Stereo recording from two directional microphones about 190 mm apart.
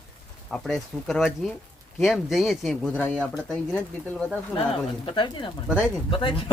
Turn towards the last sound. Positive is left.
turn(degrees=25)  # may be behind; listen again after turning